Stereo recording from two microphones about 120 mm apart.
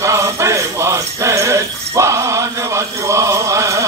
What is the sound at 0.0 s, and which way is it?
Jingle bell, 25° right (ahead or behind).